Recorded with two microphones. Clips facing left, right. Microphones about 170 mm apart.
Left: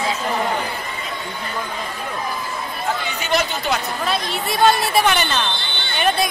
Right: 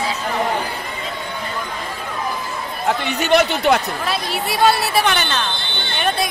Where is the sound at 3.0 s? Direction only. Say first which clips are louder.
Right 8 dB; 65° right (ahead or behind).